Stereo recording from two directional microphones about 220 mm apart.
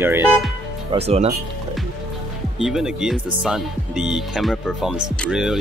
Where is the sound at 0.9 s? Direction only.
30° right (ahead or behind).